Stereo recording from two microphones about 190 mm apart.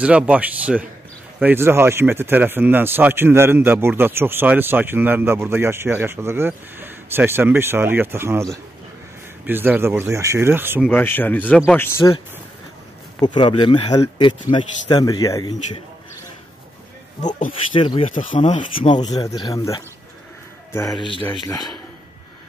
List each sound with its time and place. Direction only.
0.0 s speech: 5° right (ahead or behind)
10.9 s speech: 10° left (ahead or behind)
13.2 s a man's voice: 25° left (ahead or behind)
17.2 s speech: 40° left (ahead or behind)
17.7 s a man's voice: 30° left (ahead or behind)
18.9 s a man's voice: 20° left (ahead or behind)
21.5 s a man's voice: 20° left (ahead or behind)